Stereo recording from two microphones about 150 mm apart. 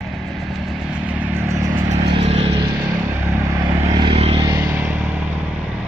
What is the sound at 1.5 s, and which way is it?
Vehicle, 20° right (ahead or behind).